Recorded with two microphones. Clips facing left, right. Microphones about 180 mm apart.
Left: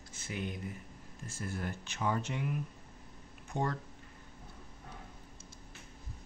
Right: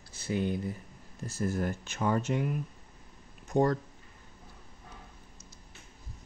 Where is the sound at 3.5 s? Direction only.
40° right (ahead or behind).